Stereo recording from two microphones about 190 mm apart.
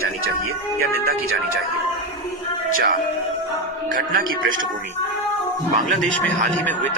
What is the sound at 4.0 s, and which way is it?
Speech, 50° right (ahead or behind).